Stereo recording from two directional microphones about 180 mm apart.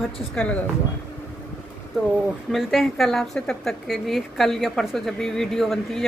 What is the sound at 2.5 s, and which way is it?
Speech, centre (ahead or behind).